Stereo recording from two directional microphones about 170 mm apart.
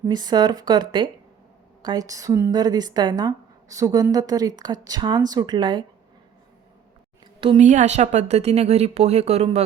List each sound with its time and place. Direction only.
0.1 s a woman's voice: 25° right (ahead or behind)
7.4 s a woman's voice: 40° right (ahead or behind)